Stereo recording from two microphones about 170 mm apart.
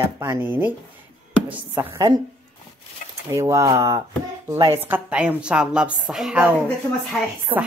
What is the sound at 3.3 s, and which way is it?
Speech, 20° right (ahead or behind).